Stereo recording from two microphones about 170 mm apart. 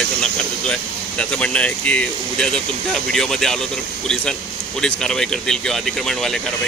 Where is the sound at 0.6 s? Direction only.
5° left (ahead or behind).